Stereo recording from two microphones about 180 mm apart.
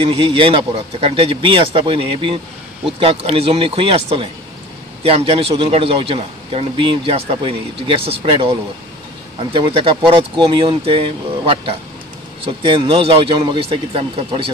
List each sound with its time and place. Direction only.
0.0 s a man's voice: 30° right (ahead or behind)